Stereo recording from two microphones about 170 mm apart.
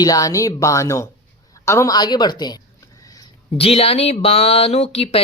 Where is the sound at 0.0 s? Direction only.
20° left (ahead or behind).